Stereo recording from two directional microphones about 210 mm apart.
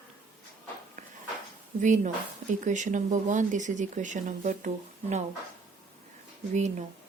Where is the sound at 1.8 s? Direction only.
35° right (ahead or behind).